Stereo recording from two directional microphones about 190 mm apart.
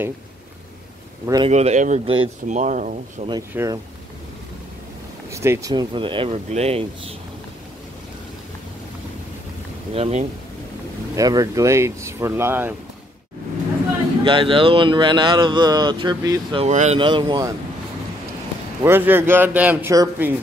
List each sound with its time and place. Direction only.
1.2 s speech: 20° right (ahead or behind)
1.5 s speech: 35° right (ahead or behind)
3.5 s a man's voice: 15° right (ahead or behind)
5.3 s speech: 15° right (ahead or behind); by 6.9 s 35° right (ahead or behind)
9.9 s speech: 30° right (ahead or behind)
11.1 s a man's voice: 20° right (ahead or behind)
14.2 s speech: 25° right (ahead or behind)
16.6 s speech: 35° right (ahead or behind)
18.8 s a man's voice: 10° right (ahead or behind)